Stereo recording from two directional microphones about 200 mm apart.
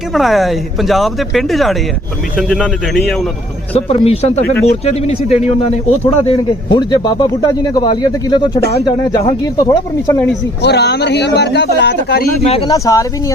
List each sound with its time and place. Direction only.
0.1 s speech: centre (ahead or behind)
3.8 s speech: 30° left (ahead or behind); by 10.2 s 15° left (ahead or behind)
10.6 s a man's voice: 55° left (ahead or behind)
12.4 s speech: 30° left (ahead or behind)
12.6 s speech: 15° left (ahead or behind)